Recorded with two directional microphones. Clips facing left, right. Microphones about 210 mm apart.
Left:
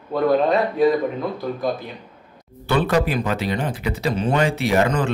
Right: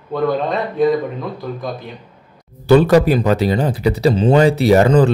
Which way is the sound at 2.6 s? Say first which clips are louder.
Right 9 dB; 40° right (ahead or behind).